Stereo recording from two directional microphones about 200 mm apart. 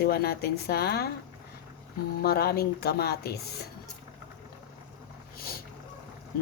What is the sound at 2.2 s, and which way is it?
Speech, 50° left (ahead or behind).